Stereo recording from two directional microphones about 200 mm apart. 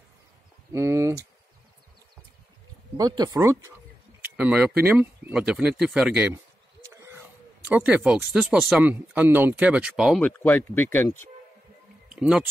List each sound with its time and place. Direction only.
0.7 s speech: 15° right (ahead or behind)
3.0 s speech: 20° right (ahead or behind)
7.6 s speech: 5° right (ahead or behind); by 11.2 s 10° left (ahead or behind)
12.1 s speech: 5° right (ahead or behind)